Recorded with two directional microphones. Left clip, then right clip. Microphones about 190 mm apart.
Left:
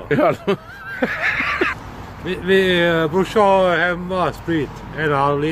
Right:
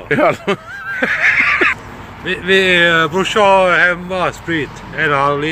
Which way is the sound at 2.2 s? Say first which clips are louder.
Right 4 dB; 20° left (ahead or behind).